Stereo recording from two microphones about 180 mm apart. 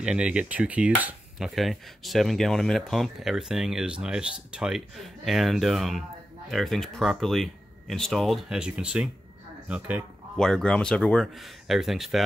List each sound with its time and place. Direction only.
0.0 s cutlery: 5° right (ahead or behind)
9.7 s speech: 5° right (ahead or behind)
10.3 s cutlery: 5° left (ahead or behind)